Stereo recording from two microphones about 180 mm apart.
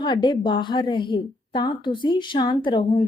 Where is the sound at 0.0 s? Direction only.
25° left (ahead or behind).